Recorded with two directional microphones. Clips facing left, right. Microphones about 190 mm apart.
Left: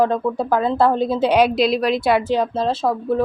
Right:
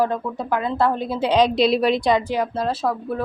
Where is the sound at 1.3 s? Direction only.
10° left (ahead or behind).